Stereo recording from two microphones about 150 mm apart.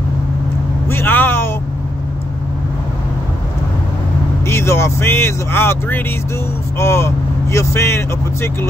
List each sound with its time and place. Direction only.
0.8 s vehicle: 15° left (ahead or behind)
4.5 s speech: 15° left (ahead or behind)